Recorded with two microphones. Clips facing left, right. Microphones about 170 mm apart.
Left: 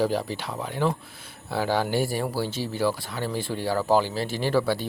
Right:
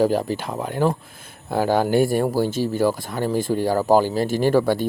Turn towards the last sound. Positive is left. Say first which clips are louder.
# right 6 dB
turn(degrees=-50)  # may be behind; listen again after turning